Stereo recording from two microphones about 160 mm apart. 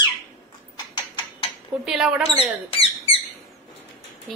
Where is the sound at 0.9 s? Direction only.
30° left (ahead or behind).